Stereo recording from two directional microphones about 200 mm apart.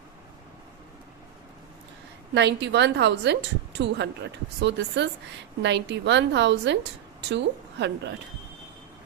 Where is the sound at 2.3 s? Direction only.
60° right (ahead or behind).